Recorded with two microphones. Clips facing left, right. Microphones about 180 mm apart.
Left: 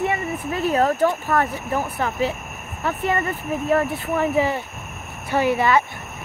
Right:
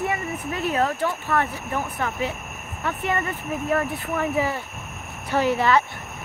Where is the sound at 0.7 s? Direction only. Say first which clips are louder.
Left 6 dB; 40° left (ahead or behind); by 4.6 s 25° left (ahead or behind).